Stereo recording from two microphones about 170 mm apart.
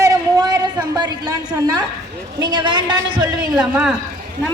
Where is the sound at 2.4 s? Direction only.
30° right (ahead or behind).